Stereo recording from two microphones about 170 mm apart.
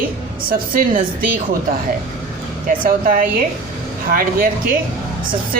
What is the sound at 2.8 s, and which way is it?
Speech, 55° right (ahead or behind).